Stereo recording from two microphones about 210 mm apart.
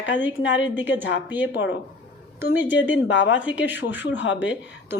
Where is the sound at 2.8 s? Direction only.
60° left (ahead or behind).